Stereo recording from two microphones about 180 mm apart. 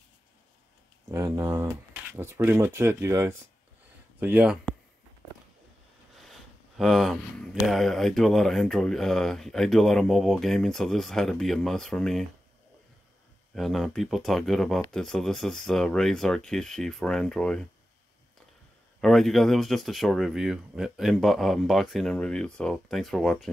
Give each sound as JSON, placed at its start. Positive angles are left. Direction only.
{"t": 1.1, "sound": "speech", "side_deg": -15}
{"t": 6.1, "sound": "a sound", "side_deg": 0}
{"t": 7.6, "sound": "speech", "side_deg": 0}
{"t": 13.6, "sound": "speech", "side_deg": 0}
{"t": 18.9, "sound": "speech", "side_deg": 0}